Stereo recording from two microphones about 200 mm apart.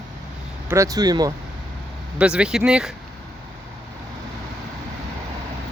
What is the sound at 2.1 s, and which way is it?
Speech, 5° right (ahead or behind).